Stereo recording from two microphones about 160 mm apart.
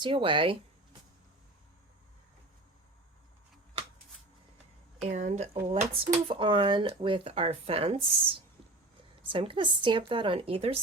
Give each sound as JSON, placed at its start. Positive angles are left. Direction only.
{"t": 0.0, "sound": "speech", "side_deg": -30}
{"t": 5.0, "sound": "speech", "side_deg": -50}
{"t": 5.6, "sound": "speech", "side_deg": -40}